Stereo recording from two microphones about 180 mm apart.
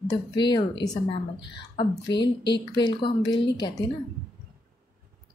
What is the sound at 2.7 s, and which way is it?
Speech, 25° left (ahead or behind).